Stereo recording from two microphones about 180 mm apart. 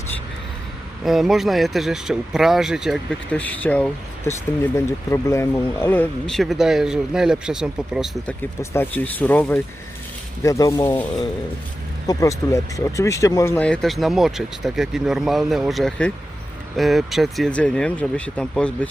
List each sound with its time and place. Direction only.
1.0 s speech: centre (ahead or behind)
3.4 s speech: 10° left (ahead or behind)
8.3 s speech: 10° left (ahead or behind)